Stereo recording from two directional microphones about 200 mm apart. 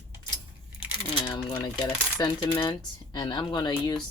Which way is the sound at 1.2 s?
20° left (ahead or behind).